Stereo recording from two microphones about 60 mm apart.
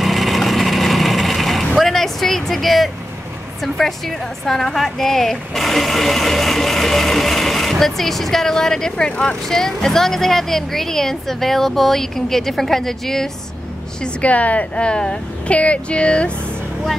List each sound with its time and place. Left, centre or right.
0.0 s vehicle: centre
1.8 s a sound: centre
3.6 s speech: centre
14.0 s a woman's voice: left